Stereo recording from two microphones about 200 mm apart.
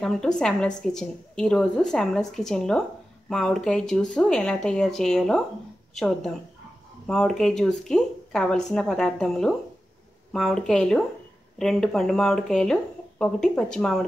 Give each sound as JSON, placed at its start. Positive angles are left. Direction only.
{"t": 0.0, "sound": "a woman's voice", "side_deg": 5}